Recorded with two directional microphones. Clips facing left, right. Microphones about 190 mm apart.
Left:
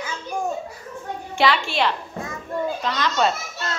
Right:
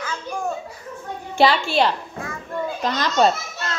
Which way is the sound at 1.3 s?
35° right (ahead or behind).